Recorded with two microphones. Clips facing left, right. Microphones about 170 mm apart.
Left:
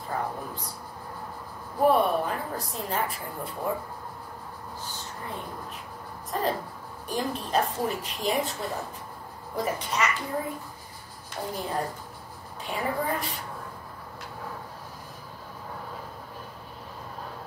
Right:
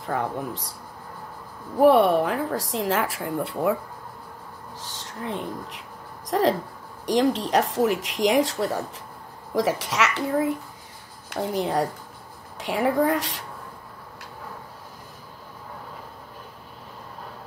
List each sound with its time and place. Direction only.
0.0 s a woman's voice: 90° right
1.8 s a woman's voice: 80° right
4.7 s a woman's voice: 90° right